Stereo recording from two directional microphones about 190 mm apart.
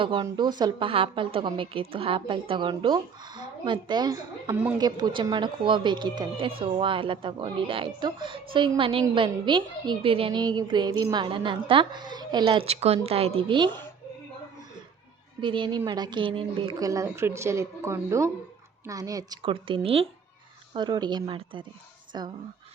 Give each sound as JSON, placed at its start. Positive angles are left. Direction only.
{"t": 0.0, "sound": "a woman's voice", "side_deg": -25}
{"t": 15.4, "sound": "a woman's voice", "side_deg": -25}